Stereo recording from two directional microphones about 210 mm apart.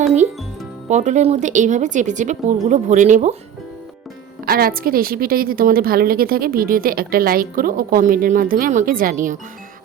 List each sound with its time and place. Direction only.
0.9 s a woman's voice: 35° right (ahead or behind)
4.4 s a woman's voice: 45° right (ahead or behind)